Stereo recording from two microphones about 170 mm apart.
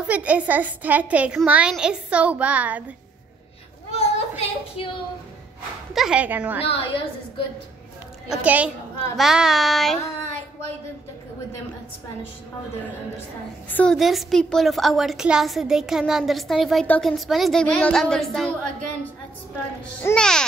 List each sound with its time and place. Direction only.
0.0 s a woman's voice: 10° right (ahead or behind)
3.9 s a sound: 35° left (ahead or behind)
5.9 s a woman's voice: 5° right (ahead or behind)
6.6 s a woman's voice: 35° left (ahead or behind)
8.3 s a woman's voice: 10° right (ahead or behind)
13.7 s a woman's voice: 5° left (ahead or behind)
20.0 s a woman's voice: 10° left (ahead or behind)